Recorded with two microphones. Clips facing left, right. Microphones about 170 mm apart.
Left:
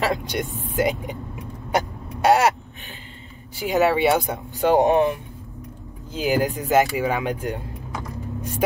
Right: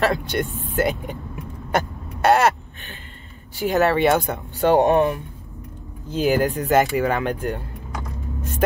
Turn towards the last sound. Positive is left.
turn(degrees=10)  # may be behind; listen again after turning